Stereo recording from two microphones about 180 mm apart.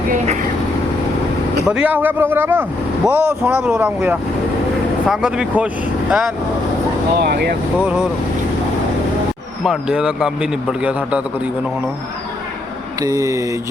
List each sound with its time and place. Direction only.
1.6 s a man's voice: 5° right (ahead or behind)
7.2 s speech: 65° right (ahead or behind)
7.8 s a man's voice: 5° right (ahead or behind)
9.6 s a man's voice: 5° right (ahead or behind)
13.0 s mantra: 20° right (ahead or behind)